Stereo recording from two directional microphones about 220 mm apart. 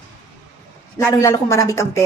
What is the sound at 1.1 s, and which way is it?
Speech, 15° left (ahead or behind).